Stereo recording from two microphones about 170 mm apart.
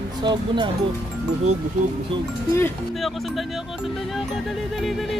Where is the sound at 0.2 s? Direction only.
25° right (ahead or behind).